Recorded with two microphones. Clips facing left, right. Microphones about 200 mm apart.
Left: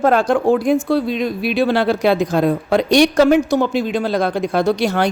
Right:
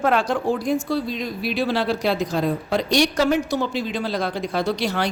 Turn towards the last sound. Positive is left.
turn(degrees=45)  # may be behind; listen again after turning